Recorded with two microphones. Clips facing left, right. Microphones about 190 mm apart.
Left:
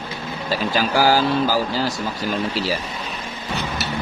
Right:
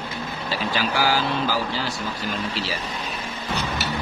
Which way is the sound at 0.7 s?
40° left (ahead or behind).